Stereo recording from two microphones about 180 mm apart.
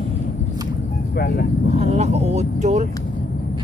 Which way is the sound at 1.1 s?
60° left (ahead or behind).